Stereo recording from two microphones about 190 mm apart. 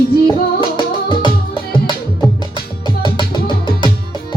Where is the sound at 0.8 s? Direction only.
25° left (ahead or behind).